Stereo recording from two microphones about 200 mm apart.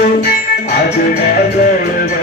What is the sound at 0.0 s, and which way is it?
Music, 50° left (ahead or behind).